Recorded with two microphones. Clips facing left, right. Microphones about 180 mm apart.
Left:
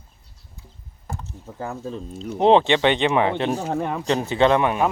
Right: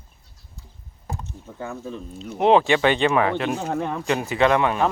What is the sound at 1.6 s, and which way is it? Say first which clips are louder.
Speech: left 2 dB; 30° left (ahead or behind).